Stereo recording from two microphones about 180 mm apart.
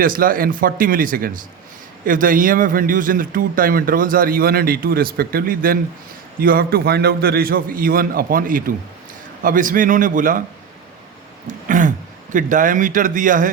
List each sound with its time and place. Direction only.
0.0 s a man's voice: 50° right (ahead or behind)
11.4 s speech: 45° right (ahead or behind)